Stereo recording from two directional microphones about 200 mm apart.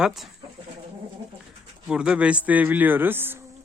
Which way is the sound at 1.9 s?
5° right (ahead or behind).